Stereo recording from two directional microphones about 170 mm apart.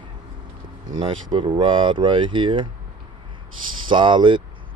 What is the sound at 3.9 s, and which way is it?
Speech, 30° right (ahead or behind).